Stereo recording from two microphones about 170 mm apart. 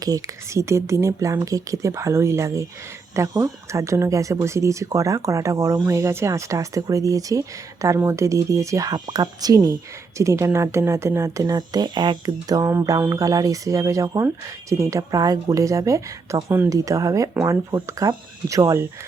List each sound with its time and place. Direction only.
0.0 s speech: 20° right (ahead or behind)